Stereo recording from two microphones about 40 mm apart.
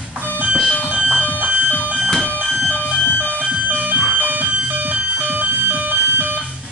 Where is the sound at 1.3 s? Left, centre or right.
Right.